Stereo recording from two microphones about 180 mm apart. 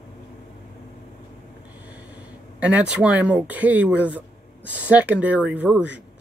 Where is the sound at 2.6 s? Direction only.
5° right (ahead or behind).